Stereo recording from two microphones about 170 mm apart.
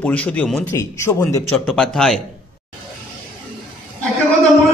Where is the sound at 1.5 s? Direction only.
5° left (ahead or behind).